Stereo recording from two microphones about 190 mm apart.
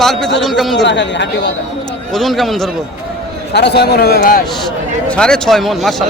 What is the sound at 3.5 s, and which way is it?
Speech, 60° left (ahead or behind).